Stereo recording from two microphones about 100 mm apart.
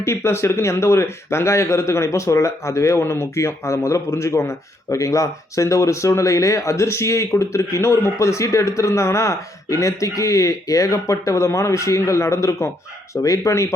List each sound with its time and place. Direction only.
0.0 s a man's voice: 25° left (ahead or behind)